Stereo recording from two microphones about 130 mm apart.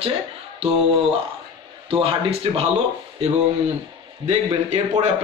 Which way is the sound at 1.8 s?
45° right (ahead or behind).